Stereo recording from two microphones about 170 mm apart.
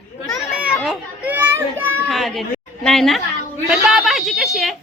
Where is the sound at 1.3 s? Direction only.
10° right (ahead or behind).